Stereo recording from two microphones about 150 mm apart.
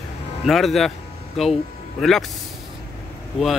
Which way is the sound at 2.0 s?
Centre (ahead or behind).